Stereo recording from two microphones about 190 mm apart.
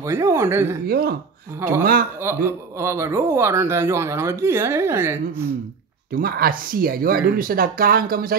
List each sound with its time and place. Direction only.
0.0 s a man's voice: 15° right (ahead or behind)
0.8 s speech: 55° right (ahead or behind)
2.2 s a man's voice: 15° right (ahead or behind)
6.1 s speech: 50° right (ahead or behind)